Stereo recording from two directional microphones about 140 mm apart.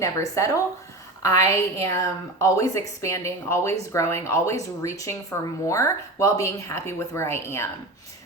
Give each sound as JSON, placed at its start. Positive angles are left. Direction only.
{"t": 0.0, "sound": "a woman's voice", "side_deg": 20}